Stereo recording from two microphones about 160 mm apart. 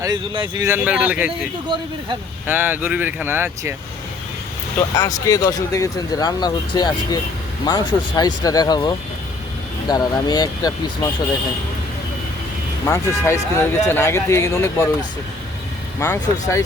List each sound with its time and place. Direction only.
0.0 s speech: 25° right (ahead or behind)
0.7 s speech: 10° right (ahead or behind)
2.5 s speech: 10° right (ahead or behind)
4.9 s speech: 20° left (ahead or behind)
12.8 s speech: 15° left (ahead or behind)
16.0 s speech: 20° left (ahead or behind)